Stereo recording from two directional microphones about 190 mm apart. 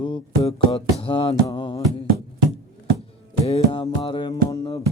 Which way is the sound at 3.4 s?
30° left (ahead or behind).